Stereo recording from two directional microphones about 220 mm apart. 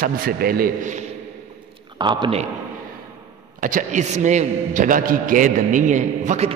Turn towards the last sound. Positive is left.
turn(degrees=-30)  # may be behind; listen again after turning